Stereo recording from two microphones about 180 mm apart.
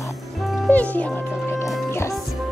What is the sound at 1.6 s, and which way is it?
Music, 15° left (ahead or behind).